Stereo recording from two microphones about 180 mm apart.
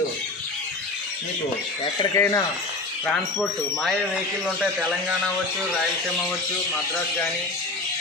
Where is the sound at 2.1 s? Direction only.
15° left (ahead or behind).